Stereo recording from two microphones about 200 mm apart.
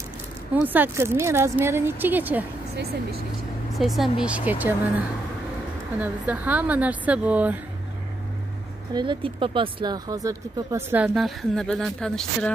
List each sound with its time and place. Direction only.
0.7 s a woman's voice: 10° right (ahead or behind)
2.7 s speech: 50° right (ahead or behind)
3.7 s a woman's voice: centre (ahead or behind)
8.9 s speech: 25° right (ahead or behind)
11.1 s speech: centre (ahead or behind)